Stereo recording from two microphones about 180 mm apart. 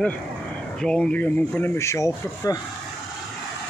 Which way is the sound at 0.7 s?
5° left (ahead or behind).